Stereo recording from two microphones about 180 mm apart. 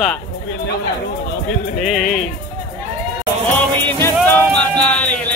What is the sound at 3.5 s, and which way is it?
Music, 10° left (ahead or behind).